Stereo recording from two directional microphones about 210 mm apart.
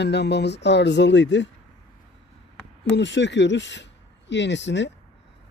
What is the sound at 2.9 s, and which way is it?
Speech, 60° left (ahead or behind).